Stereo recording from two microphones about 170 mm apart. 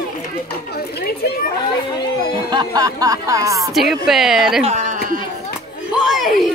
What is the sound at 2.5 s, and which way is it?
Speech, 20° right (ahead or behind).